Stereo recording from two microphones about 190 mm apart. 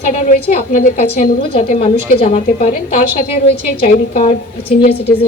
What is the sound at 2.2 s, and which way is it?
Speech, 35° left (ahead or behind).